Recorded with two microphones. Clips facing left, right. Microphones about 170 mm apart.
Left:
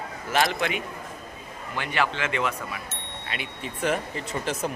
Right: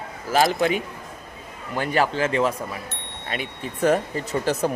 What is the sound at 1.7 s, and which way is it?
Speech, 40° right (ahead or behind).